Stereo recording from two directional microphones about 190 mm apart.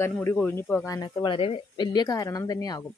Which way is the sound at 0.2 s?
10° left (ahead or behind).